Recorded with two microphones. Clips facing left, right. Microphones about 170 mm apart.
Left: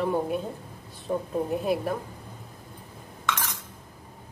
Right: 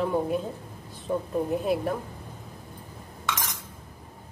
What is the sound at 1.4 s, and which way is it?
Speech, centre (ahead or behind).